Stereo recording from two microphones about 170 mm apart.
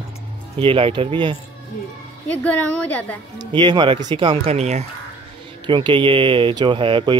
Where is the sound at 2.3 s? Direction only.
10° left (ahead or behind).